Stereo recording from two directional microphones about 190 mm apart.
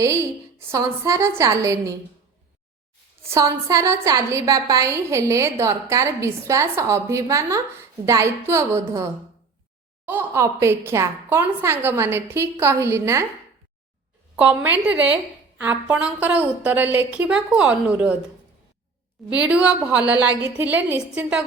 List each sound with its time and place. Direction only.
0.7 s a woman's voice: 15° right (ahead or behind)
3.2 s a woman's voice: 15° right (ahead or behind)
10.1 s a woman's voice: 10° right (ahead or behind)
14.3 s a woman's voice: 10° right (ahead or behind)
19.3 s a woman's voice: 5° right (ahead or behind)